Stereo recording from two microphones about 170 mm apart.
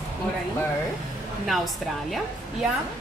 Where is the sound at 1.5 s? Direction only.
Centre (ahead or behind).